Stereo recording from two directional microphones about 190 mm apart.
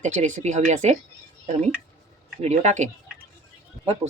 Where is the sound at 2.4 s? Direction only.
35° right (ahead or behind).